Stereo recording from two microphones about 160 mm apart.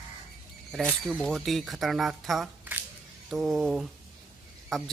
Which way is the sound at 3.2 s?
Centre (ahead or behind).